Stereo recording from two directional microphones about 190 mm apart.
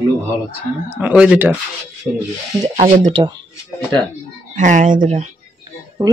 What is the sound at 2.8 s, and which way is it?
Speech, 40° right (ahead or behind).